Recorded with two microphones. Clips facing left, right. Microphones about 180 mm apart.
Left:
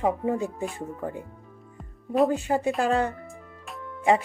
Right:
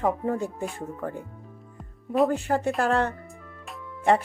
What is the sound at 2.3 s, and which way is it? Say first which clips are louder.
Speech: even; 15° left (ahead or behind).